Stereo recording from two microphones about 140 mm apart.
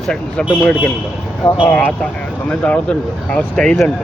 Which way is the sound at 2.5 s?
10° left (ahead or behind).